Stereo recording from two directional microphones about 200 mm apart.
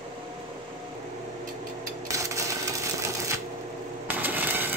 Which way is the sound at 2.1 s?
15° right (ahead or behind).